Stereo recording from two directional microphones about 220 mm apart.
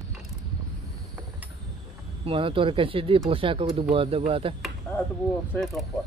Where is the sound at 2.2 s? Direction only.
25° right (ahead or behind).